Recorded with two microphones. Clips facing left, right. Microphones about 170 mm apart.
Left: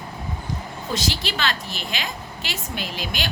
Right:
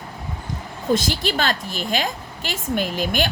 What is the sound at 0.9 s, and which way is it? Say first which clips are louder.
A woman's voice: right 7 dB; 50° right (ahead or behind).